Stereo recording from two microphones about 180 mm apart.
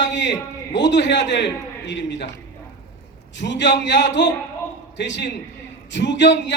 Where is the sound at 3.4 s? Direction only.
80° left.